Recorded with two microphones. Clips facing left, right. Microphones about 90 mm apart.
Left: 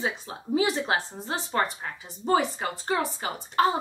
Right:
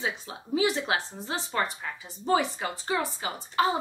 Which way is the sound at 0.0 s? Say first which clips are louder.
Left 2 dB; 35° left (ahead or behind).